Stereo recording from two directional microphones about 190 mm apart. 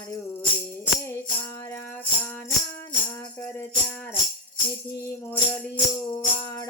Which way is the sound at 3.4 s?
10° left (ahead or behind).